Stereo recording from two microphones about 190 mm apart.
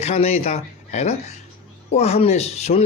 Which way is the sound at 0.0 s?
35° left (ahead or behind).